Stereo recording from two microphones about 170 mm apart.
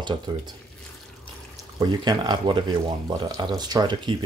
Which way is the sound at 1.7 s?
20° right (ahead or behind).